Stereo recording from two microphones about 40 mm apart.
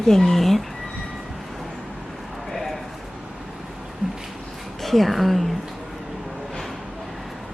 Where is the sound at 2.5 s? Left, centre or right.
Centre.